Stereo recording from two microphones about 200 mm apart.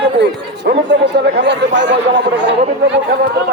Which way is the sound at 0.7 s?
55° right (ahead or behind).